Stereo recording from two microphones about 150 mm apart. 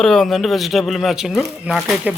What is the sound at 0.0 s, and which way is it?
Speech, 5° left (ahead or behind).